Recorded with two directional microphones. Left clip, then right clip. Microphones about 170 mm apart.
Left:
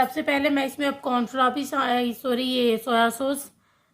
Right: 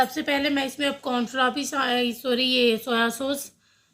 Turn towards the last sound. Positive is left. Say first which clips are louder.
# left 2 dB
turn(degrees=20)  # may be behind; listen again after turning